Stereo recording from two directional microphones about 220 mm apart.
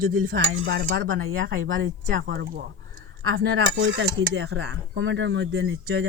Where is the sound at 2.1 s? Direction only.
50° right (ahead or behind).